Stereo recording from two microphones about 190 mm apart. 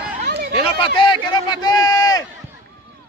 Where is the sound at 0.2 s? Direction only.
55° right (ahead or behind).